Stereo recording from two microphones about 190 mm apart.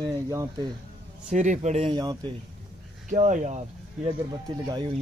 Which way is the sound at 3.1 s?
40° right (ahead or behind).